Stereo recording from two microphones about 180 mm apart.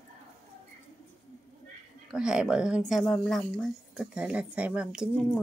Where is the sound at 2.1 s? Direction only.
5° right (ahead or behind).